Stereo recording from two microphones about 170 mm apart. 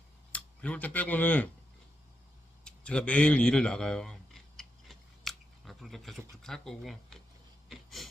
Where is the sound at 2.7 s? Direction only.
5° left (ahead or behind).